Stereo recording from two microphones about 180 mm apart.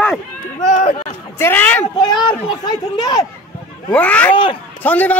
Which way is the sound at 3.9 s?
5° left (ahead or behind).